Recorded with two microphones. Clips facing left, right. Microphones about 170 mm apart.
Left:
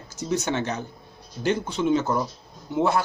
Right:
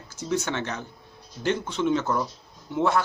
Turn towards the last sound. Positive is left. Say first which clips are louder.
# left 1 dB
turn(degrees=10)  # may be behind; listen again after turning